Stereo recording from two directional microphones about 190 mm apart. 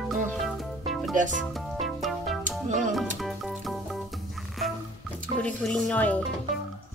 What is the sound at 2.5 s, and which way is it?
Music, 40° right (ahead or behind).